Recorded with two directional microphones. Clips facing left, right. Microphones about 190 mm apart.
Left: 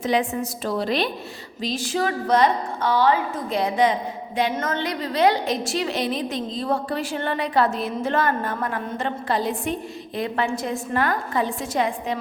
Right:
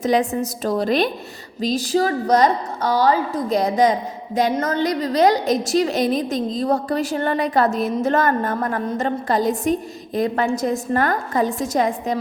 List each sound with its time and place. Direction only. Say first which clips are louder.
0.0 s a woman's voice: right 4 dB; 40° right (ahead or behind)